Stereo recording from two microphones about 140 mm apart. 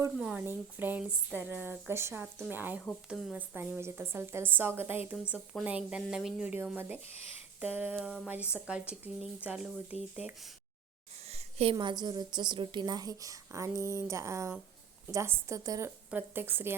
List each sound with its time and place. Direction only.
0.2 s speech: 10° right (ahead or behind)
11.3 s a woman's voice: 45° right (ahead or behind); by 15.9 s 25° right (ahead or behind)
16.0 s speech: 15° right (ahead or behind)